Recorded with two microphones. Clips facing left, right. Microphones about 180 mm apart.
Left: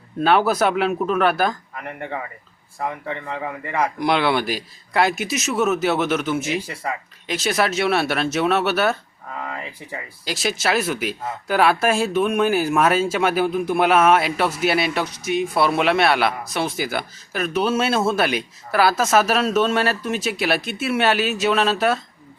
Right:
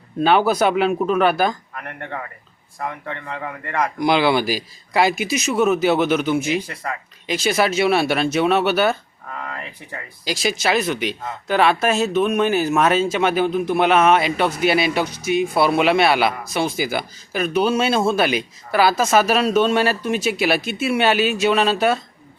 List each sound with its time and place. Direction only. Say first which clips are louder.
0.2 s speech: right 1 dB; centre (ahead or behind)